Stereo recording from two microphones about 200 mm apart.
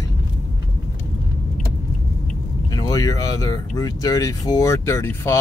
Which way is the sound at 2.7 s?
15° left (ahead or behind).